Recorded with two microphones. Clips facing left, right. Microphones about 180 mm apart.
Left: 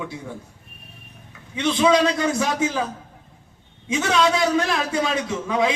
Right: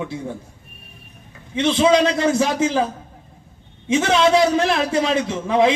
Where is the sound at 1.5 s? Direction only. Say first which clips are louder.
Right 3 dB; 25° right (ahead or behind).